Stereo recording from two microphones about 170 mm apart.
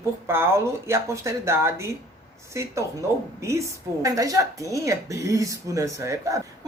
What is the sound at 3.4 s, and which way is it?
Speech, 15° right (ahead or behind).